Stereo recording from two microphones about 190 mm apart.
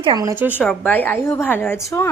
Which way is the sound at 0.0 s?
20° right (ahead or behind).